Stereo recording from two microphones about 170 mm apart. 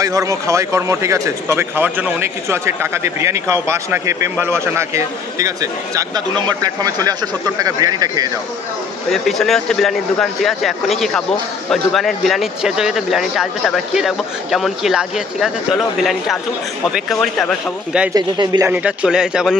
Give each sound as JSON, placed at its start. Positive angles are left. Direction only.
{"t": 0.0, "sound": "speech", "side_deg": -20}
{"t": 9.1, "sound": "speech", "side_deg": 0}
{"t": 18.1, "sound": "speech", "side_deg": -25}
{"t": 18.7, "sound": "speech", "side_deg": -10}